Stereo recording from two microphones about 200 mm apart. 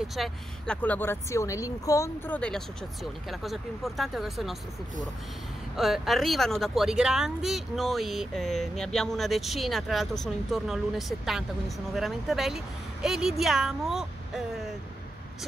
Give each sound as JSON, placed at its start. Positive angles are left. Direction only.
{"t": 0.1, "sound": "speech", "side_deg": 0}
{"t": 5.8, "sound": "speech", "side_deg": 0}